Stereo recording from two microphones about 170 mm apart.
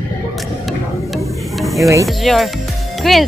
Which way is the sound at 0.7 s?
Centre (ahead or behind).